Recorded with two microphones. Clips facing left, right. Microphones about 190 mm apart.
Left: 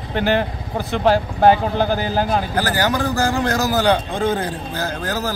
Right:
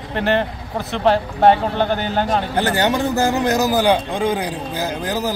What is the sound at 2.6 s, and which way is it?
A man's voice, 25° right (ahead or behind).